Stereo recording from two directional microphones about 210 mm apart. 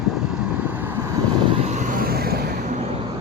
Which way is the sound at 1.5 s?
30° right (ahead or behind).